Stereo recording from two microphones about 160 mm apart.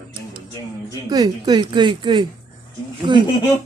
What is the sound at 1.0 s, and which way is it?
A woman's voice, 25° right (ahead or behind).